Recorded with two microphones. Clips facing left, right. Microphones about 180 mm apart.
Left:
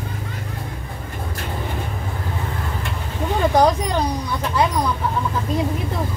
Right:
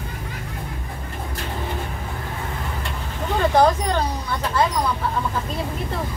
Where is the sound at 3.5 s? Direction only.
15° left (ahead or behind).